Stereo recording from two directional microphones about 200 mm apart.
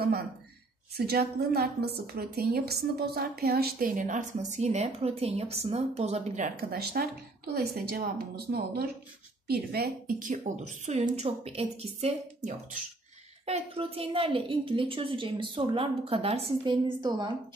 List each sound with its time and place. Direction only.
0.9 s a woman's voice: 50° right (ahead or behind); by 17.3 s 20° right (ahead or behind)